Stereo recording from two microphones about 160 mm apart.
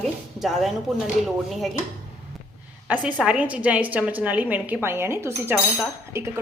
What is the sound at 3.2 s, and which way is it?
A woman's voice, 10° right (ahead or behind).